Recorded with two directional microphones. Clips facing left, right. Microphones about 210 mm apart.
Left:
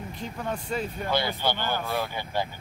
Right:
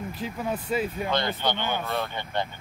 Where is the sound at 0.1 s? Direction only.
5° right (ahead or behind).